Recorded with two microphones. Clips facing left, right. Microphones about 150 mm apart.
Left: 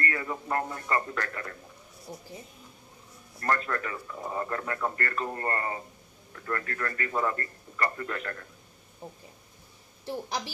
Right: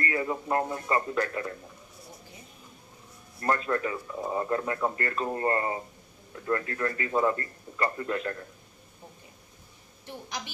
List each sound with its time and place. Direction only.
0.0 s speech: 20° right (ahead or behind)
3.3 s speech: 20° right (ahead or behind)
10.0 s a woman's voice: 35° left (ahead or behind)